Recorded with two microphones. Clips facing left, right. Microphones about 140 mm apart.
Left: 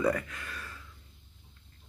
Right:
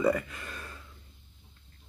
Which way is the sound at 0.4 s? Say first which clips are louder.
Right 1 dB; 25° right (ahead or behind).